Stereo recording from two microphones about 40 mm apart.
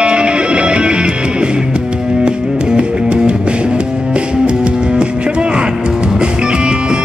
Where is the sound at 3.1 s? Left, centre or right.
Right.